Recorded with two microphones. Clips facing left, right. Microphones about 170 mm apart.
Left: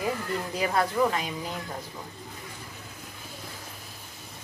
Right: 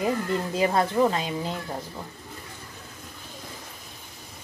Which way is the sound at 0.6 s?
25° right (ahead or behind).